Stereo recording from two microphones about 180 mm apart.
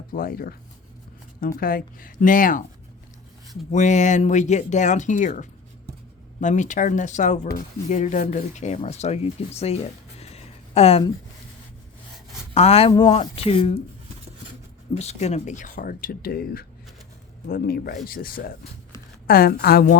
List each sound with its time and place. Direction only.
0.1 s speech: 55° left (ahead or behind)
3.7 s speech: 40° left (ahead or behind)
12.5 s speech: 35° left (ahead or behind)
14.9 s a woman's voice: 40° left (ahead or behind); by 20.0 s 55° left (ahead or behind)